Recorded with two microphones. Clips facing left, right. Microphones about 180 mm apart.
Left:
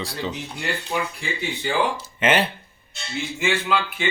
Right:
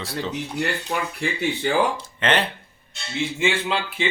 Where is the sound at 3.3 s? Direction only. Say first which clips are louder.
Left 2 dB; 25° right (ahead or behind).